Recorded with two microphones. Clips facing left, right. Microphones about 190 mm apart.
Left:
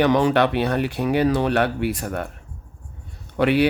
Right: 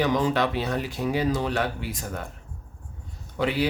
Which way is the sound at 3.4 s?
65° left (ahead or behind).